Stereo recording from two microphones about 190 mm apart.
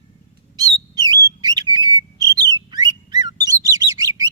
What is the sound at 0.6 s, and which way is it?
Bird, 20° right (ahead or behind).